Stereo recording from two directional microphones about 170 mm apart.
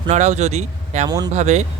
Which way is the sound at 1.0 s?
25° right (ahead or behind).